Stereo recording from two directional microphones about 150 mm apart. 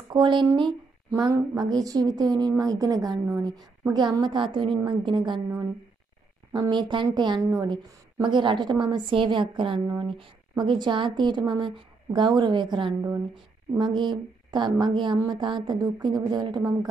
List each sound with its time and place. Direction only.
0.1 s a woman's voice: 30° right (ahead or behind)
6.5 s a woman's voice: 30° right (ahead or behind)